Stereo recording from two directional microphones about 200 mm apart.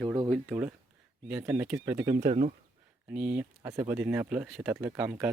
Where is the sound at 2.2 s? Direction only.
30° right (ahead or behind).